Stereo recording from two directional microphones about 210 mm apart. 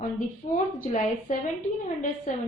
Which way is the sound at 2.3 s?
40° left (ahead or behind).